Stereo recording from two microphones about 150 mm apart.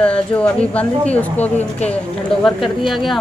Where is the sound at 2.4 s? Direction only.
Centre (ahead or behind).